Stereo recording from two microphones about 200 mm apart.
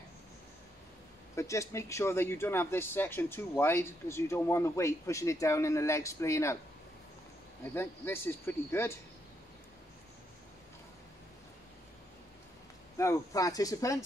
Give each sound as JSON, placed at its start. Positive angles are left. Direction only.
{"t": 1.3, "sound": "speech", "side_deg": 15}
{"t": 7.7, "sound": "speech", "side_deg": 10}
{"t": 12.9, "sound": "speech", "side_deg": 15}